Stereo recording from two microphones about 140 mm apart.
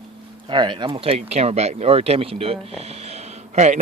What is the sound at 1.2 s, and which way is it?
A man's voice, 50° right (ahead or behind).